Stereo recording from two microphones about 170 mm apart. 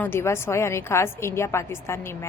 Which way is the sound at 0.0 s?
15° left (ahead or behind).